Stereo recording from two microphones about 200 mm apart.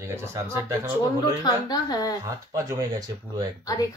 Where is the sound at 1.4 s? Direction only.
20° left (ahead or behind).